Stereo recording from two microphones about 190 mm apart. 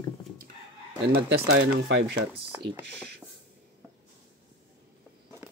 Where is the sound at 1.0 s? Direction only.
60° right (ahead or behind).